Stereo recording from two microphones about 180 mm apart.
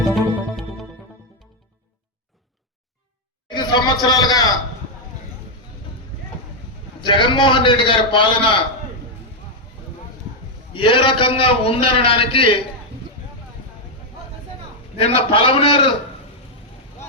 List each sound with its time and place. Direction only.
0.3 s music: centre (ahead or behind)
3.5 s a sound: 25° left (ahead or behind)
4.0 s a man's voice: 20° left (ahead or behind)
7.0 s a man's voice: 25° left (ahead or behind)
10.8 s a man's voice: 30° left (ahead or behind)
14.9 s a man's voice: 30° left (ahead or behind)